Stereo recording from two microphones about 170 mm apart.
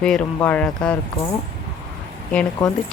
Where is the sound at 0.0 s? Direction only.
5° left (ahead or behind).